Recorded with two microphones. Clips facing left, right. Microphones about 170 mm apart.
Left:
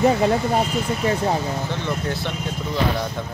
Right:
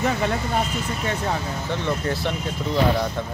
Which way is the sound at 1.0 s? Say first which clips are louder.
Left 5 dB; 30° left (ahead or behind).